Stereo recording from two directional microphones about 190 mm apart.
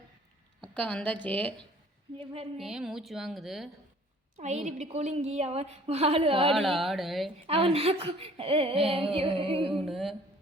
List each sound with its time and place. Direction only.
0.6 s a woman's voice: 5° left (ahead or behind)
2.1 s a woman's voice: 30° right (ahead or behind)
2.6 s speech: centre (ahead or behind)
4.4 s a woman's voice: 35° right (ahead or behind)
6.5 s speech: centre (ahead or behind)
7.4 s speech: 30° right (ahead or behind)
9.7 s speech: centre (ahead or behind)